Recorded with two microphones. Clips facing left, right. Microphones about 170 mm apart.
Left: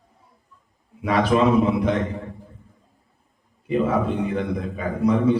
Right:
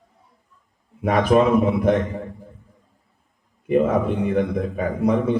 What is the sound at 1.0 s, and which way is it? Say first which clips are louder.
Speech: right 2 dB; 50° right (ahead or behind).